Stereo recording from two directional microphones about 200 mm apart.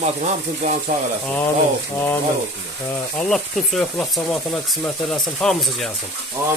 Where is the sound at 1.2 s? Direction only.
10° left (ahead or behind).